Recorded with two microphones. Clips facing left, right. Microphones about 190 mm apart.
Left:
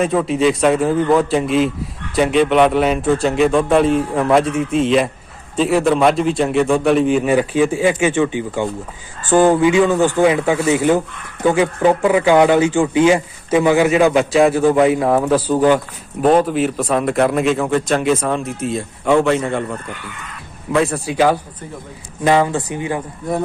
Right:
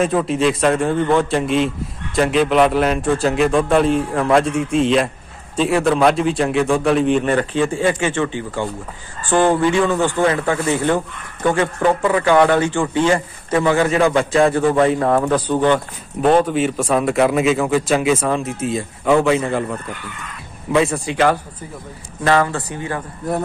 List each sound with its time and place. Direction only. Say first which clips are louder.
0.0 s a man's voice: left 1 dB; centre (ahead or behind); by 23.0 s 15° left (ahead or behind)